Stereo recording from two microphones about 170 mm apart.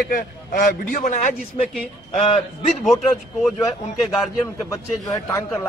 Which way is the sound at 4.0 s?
Centre (ahead or behind).